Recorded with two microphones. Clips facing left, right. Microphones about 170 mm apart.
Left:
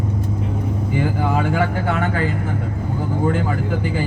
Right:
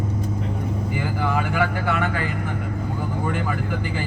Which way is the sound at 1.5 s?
30° left (ahead or behind).